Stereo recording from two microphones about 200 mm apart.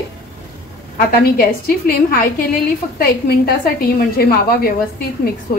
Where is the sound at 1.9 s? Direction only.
45° left (ahead or behind).